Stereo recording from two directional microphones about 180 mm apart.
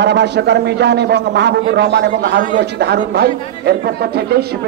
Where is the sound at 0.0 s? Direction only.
70° right (ahead or behind).